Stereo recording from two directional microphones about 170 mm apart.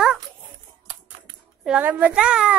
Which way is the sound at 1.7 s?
10° right (ahead or behind).